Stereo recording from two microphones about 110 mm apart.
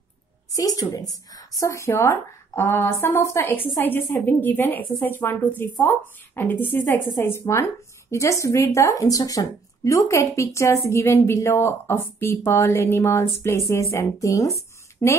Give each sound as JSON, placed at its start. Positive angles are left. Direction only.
{"t": 0.6, "sound": "a woman's voice", "side_deg": 30}